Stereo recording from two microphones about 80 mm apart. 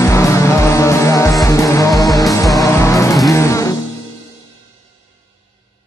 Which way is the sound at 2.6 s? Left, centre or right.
Left.